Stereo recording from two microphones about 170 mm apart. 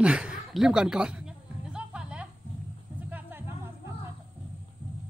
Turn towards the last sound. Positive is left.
turn(degrees=-10)  # may be behind; listen again after turning